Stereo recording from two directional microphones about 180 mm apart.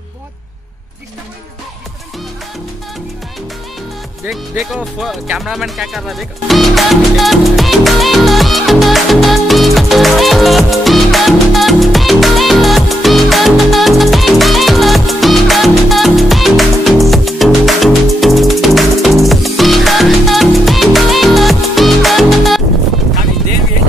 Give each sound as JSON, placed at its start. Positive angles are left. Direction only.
{"t": 4.3, "sound": "music", "side_deg": 0}